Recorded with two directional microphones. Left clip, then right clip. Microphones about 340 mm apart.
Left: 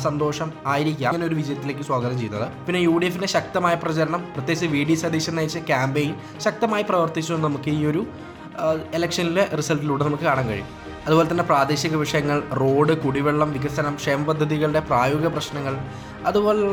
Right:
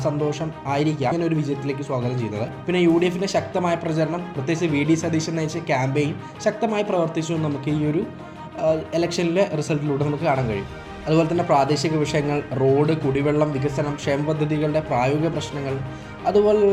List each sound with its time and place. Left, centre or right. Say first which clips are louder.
0.0 s speech: left 1 dB; centre